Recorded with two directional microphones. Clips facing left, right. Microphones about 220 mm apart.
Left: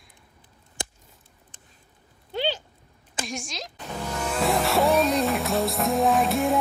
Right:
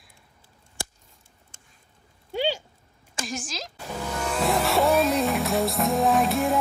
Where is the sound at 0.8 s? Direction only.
20° left (ahead or behind).